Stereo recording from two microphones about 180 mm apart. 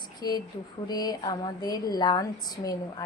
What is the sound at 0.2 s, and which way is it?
A woman's voice, 20° left (ahead or behind).